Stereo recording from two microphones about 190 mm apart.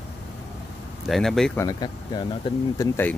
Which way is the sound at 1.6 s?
20° left (ahead or behind).